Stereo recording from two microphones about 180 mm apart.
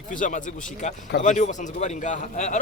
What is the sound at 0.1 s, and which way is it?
A man's voice, 45° left (ahead or behind).